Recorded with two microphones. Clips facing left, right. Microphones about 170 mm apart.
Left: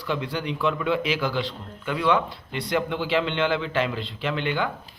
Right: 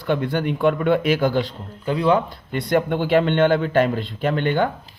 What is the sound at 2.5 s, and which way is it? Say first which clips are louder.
Speech: right 6 dB; 50° right (ahead or behind).